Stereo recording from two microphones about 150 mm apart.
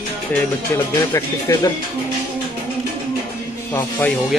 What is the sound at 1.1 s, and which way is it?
Speech, 20° left (ahead or behind).